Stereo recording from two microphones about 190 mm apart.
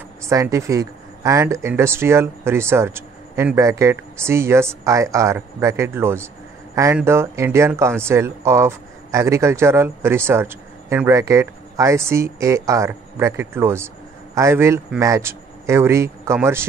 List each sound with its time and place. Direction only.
0.2 s speech: 15° right (ahead or behind)